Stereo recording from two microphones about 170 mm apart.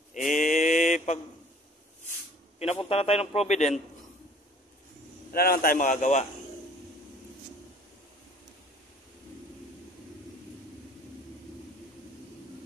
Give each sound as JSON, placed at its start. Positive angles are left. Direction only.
{"t": 0.1, "sound": "mantra", "side_deg": 50}
{"t": 2.6, "sound": "a man's voice", "side_deg": 35}
{"t": 5.3, "sound": "speech", "side_deg": 60}